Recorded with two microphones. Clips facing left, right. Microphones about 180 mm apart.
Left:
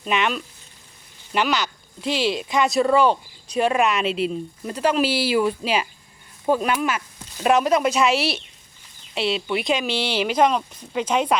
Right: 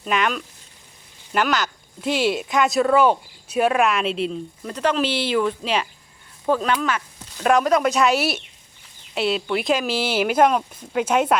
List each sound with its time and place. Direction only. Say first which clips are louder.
0.0 s speech: even; centre (ahead or behind)
2.0 s speech: right 2 dB; 55° right (ahead or behind)
2.3 s speech: right 1 dB; centre (ahead or behind)